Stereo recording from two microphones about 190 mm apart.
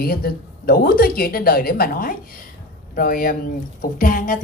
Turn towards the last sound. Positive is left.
turn(degrees=45)  # may be behind; listen again after turning